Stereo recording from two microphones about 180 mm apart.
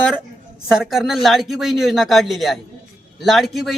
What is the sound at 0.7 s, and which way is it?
Speech, centre (ahead or behind).